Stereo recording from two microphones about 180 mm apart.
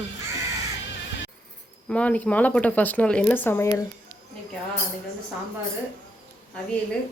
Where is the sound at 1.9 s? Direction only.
5° left (ahead or behind).